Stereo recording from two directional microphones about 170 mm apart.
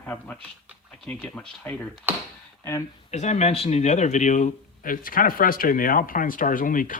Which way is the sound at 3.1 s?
40° left (ahead or behind).